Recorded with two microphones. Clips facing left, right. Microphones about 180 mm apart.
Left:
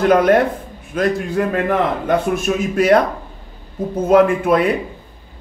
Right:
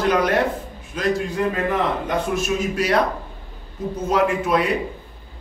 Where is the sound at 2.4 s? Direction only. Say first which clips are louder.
Left 5 dB; 55° left (ahead or behind).